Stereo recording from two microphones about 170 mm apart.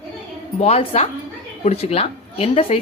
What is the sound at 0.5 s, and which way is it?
Speech, 35° left (ahead or behind).